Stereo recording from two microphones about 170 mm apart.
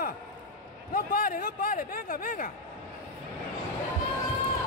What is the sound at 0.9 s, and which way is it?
A man's voice, 55° left (ahead or behind).